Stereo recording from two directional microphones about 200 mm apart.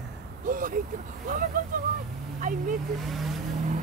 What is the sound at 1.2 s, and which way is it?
Speech, 45° right (ahead or behind).